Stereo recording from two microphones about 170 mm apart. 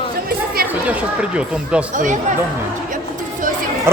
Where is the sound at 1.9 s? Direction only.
50° right (ahead or behind).